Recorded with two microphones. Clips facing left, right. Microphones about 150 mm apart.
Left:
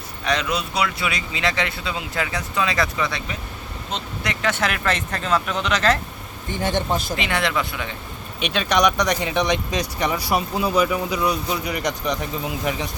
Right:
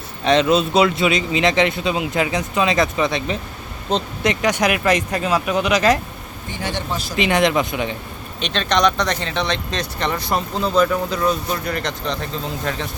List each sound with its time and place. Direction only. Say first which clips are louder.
0.3 s a man's voice: right 8 dB; 25° right (ahead or behind)
6.5 s a man's voice: left 3 dB; 50° left (ahead or behind)
7.2 s a man's voice: right 6 dB; 20° right (ahead or behind)
8.4 s speech: right 1 dB; 10° left (ahead or behind)